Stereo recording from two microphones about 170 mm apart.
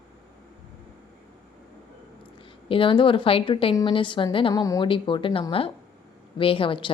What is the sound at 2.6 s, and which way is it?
A woman's voice, 30° left (ahead or behind).